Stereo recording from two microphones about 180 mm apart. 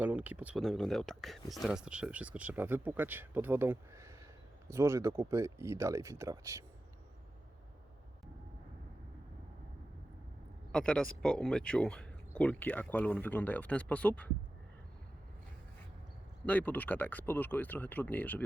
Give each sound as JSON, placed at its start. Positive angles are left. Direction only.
{"t": 0.0, "sound": "speech", "side_deg": -10}
{"t": 10.7, "sound": "speech", "side_deg": 5}
{"t": 16.5, "sound": "speech", "side_deg": 10}